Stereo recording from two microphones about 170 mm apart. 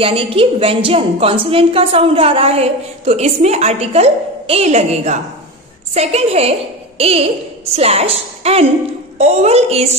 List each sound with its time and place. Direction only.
0.0 s a woman's voice: 30° right (ahead or behind)